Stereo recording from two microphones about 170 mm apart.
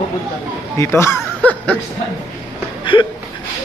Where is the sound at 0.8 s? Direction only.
15° left (ahead or behind).